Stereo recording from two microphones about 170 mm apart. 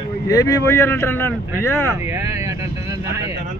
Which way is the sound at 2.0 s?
15° right (ahead or behind).